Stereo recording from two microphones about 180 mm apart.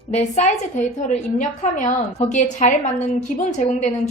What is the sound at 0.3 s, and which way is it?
A woman's voice, 40° left (ahead or behind).